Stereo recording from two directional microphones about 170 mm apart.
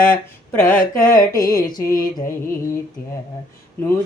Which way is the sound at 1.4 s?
20° left (ahead or behind).